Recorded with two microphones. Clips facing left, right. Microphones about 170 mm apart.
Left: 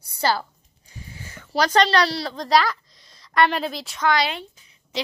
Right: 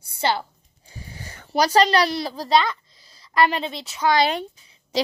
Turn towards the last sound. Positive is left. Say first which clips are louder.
# right 6 dB
turn(degrees=-35)  # may be behind; listen again after turning